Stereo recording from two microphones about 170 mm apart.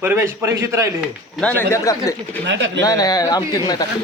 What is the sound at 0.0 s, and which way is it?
Speech, 15° right (ahead or behind).